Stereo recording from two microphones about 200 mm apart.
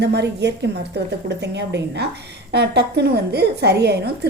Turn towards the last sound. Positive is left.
turn(degrees=-55)  # may be behind; listen again after turning